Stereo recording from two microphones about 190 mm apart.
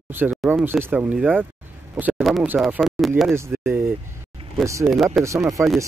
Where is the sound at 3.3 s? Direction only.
15° right (ahead or behind).